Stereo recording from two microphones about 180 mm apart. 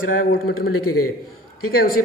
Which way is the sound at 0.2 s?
55° left (ahead or behind).